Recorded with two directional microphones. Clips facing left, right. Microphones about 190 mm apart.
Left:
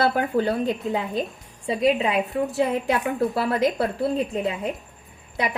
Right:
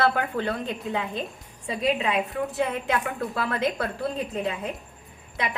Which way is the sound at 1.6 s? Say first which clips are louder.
Left 4 dB; 35° left (ahead or behind).